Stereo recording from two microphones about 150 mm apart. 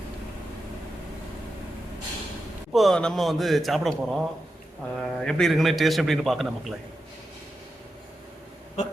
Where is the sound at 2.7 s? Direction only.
Centre (ahead or behind).